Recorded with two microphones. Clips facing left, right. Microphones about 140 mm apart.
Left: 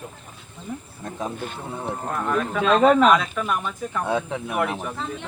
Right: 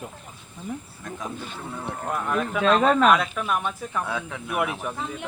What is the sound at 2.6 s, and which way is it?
Speech, 10° left (ahead or behind).